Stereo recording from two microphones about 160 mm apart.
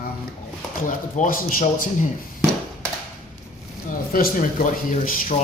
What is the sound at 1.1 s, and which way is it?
Speech, 55° left (ahead or behind).